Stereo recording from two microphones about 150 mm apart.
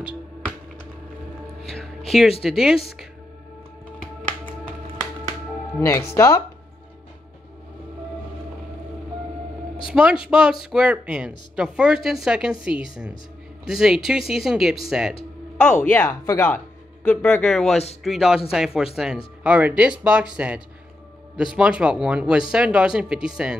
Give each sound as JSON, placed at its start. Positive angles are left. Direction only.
{"t": 1.6, "sound": "music", "side_deg": 0}
{"t": 2.4, "sound": "speech", "side_deg": 0}
{"t": 5.8, "sound": "speech", "side_deg": 20}
{"t": 9.8, "sound": "speech", "side_deg": -5}
{"t": 15.8, "sound": "speech", "side_deg": 15}